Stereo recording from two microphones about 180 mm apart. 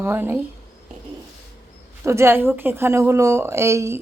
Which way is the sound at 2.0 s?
15° right (ahead or behind).